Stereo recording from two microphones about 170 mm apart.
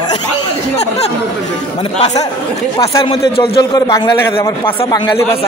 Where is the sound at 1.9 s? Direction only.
40° left (ahead or behind).